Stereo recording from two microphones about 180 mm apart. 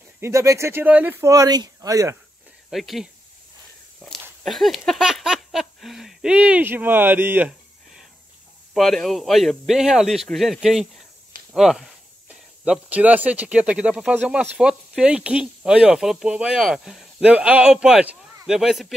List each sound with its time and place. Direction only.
0.2 s speech: 15° right (ahead or behind)
2.7 s speech: centre (ahead or behind)
4.4 s a sound: centre (ahead or behind)
8.7 s speech: centre (ahead or behind)